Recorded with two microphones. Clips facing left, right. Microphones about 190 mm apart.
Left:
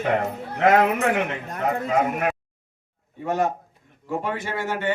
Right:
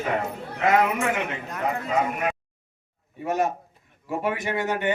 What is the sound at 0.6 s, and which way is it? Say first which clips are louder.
Speech: left 3 dB; 60° left (ahead or behind).